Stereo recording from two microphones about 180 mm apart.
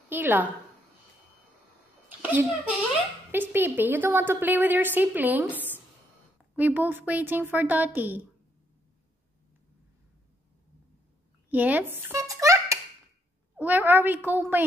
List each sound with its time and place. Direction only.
0.1 s a woman's voice: 10° right (ahead or behind)
2.0 s a sound: 10° right (ahead or behind)
3.3 s a woman's voice: 10° right (ahead or behind)
6.5 s a woman's voice: 10° right (ahead or behind)
11.5 s a child's voice: 10° right (ahead or behind)